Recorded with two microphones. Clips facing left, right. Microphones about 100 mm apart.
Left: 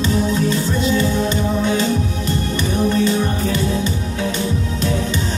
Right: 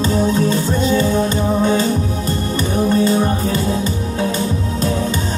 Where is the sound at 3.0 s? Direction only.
35° right (ahead or behind).